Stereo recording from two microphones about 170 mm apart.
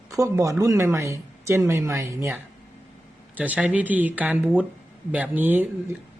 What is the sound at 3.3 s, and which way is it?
Speech, 10° right (ahead or behind).